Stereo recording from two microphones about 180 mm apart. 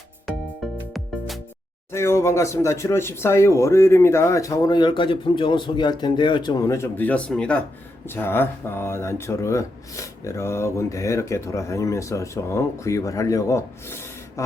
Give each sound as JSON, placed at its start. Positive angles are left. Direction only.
{"t": 0.3, "sound": "music", "side_deg": 0}
{"t": 1.9, "sound": "speech", "side_deg": 15}